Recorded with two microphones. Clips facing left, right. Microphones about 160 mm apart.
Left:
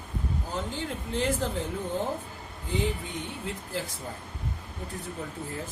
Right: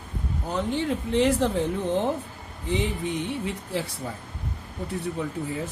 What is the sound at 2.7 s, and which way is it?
Speech, 75° right (ahead or behind).